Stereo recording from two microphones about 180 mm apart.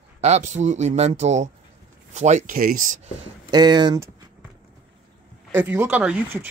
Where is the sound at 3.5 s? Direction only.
25° right (ahead or behind).